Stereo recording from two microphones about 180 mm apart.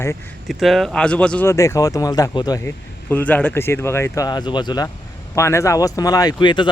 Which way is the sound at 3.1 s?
10° left (ahead or behind).